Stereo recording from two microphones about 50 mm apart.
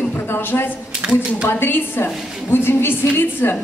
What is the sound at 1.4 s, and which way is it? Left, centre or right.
A woman's voice, left.